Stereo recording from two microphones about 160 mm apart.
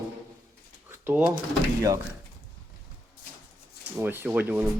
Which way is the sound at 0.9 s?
15° right (ahead or behind).